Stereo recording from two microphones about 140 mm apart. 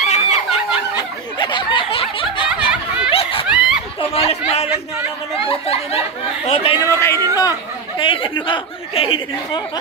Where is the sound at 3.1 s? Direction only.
40° left (ahead or behind).